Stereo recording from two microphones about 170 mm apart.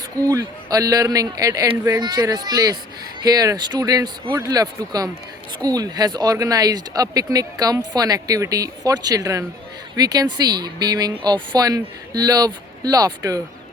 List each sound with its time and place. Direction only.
0.3 s speech: 20° right (ahead or behind)